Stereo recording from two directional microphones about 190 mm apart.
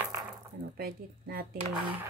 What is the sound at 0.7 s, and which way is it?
Speech, 50° right (ahead or behind).